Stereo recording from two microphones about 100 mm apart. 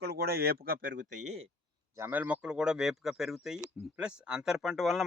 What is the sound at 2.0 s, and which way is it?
Speech, 20° right (ahead or behind).